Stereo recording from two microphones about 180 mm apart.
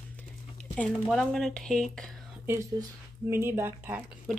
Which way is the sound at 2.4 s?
15° right (ahead or behind).